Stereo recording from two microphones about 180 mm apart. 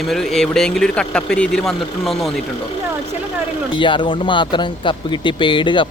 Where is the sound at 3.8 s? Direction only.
25° left (ahead or behind).